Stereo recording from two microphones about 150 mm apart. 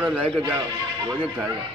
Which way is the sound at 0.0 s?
10° right (ahead or behind).